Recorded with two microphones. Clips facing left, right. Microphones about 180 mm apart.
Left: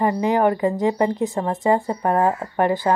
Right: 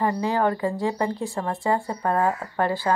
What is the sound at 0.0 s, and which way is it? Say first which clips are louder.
Speech: left 4 dB; 20° left (ahead or behind).